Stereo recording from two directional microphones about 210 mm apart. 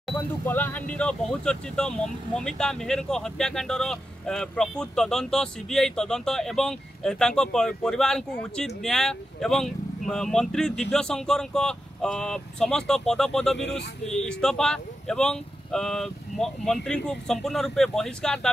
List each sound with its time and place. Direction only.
0.5 s speech: 10° left (ahead or behind)
13.6 s speech: 55° left (ahead or behind)
14.0 s speech: 5° left (ahead or behind)